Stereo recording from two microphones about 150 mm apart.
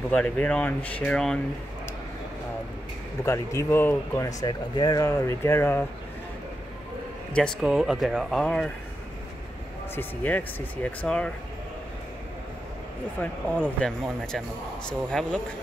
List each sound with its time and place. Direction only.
0.1 s speech: 10° left (ahead or behind)
3.3 s speech: 15° left (ahead or behind)
7.6 s speech: 5° right (ahead or behind)
9.9 s speech: 10° left (ahead or behind)
13.2 s speech: 10° left (ahead or behind)